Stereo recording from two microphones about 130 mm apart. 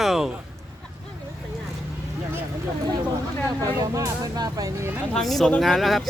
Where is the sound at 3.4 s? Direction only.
30° right (ahead or behind).